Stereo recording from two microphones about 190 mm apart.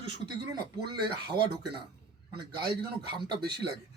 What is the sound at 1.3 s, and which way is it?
Speech, 60° right (ahead or behind).